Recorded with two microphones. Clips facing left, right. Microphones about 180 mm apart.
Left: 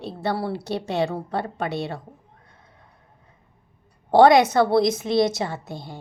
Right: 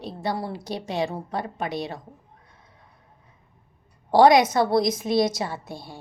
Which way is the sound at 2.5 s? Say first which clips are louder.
Left 1 dB; 55° left (ahead or behind).